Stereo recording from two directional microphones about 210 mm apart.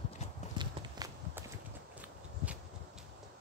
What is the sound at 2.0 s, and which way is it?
Walk, 5° right (ahead or behind).